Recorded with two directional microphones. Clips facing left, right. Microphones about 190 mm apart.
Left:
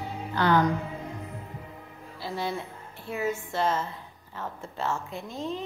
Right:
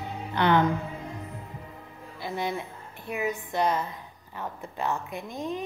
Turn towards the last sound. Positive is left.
turn(degrees=-15)  # may be behind; listen again after turning